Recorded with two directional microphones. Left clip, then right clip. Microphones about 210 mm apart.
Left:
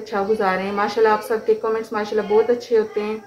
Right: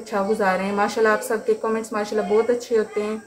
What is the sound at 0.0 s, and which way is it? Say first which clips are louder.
A woman's voice: left 1 dB; 5° left (ahead or behind).